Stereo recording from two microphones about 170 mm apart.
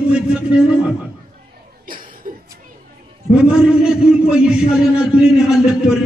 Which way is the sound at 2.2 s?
55° right (ahead or behind).